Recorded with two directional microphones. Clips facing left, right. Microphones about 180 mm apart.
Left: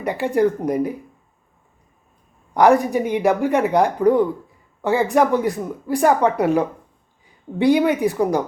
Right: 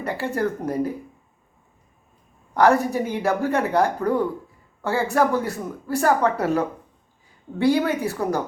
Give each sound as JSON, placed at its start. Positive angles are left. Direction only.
{"t": 0.0, "sound": "a woman's voice", "side_deg": 15}
{"t": 2.5, "sound": "a woman's voice", "side_deg": 15}